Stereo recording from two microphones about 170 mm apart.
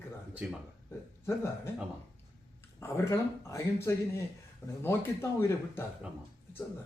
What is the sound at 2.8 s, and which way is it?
A man's voice, 15° left (ahead or behind).